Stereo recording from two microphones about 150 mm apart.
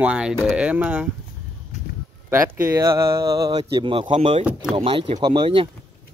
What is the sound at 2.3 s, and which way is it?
Speech, 15° right (ahead or behind).